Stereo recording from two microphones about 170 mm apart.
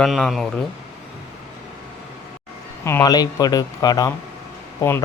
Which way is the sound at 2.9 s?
20° left (ahead or behind).